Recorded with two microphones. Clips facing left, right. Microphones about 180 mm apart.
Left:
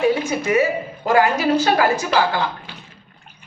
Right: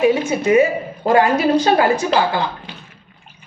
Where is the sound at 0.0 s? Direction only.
20° right (ahead or behind).